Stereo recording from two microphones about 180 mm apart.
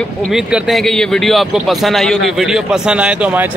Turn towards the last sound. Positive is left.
turn(degrees=-10)  # may be behind; listen again after turning